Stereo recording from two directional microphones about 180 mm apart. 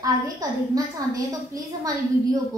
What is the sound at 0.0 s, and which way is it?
A woman's voice, 20° right (ahead or behind).